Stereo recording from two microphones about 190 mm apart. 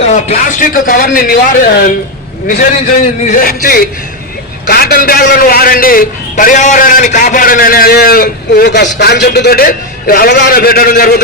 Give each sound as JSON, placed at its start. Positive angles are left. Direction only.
{"t": 0.0, "sound": "a man's voice", "side_deg": 35}
{"t": 3.2, "sound": "a man's voice", "side_deg": 45}